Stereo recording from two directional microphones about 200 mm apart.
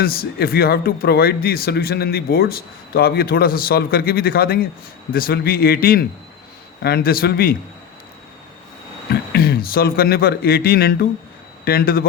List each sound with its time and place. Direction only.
0.0 s speech: 50° left (ahead or behind)
9.3 s speech: 50° left (ahead or behind)